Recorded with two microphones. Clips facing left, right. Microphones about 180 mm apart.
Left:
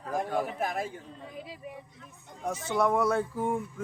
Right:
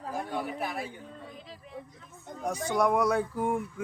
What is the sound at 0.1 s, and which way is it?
Speech, 45° left (ahead or behind).